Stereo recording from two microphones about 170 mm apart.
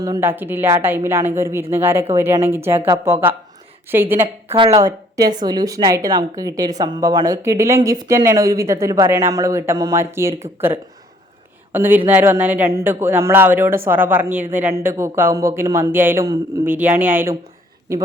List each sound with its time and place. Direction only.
0.0 s speech: 15° right (ahead or behind)
4.4 s a woman's voice: 30° right (ahead or behind); by 17.3 s 10° right (ahead or behind)